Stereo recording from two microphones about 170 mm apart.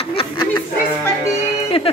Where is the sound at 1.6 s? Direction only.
35° left (ahead or behind).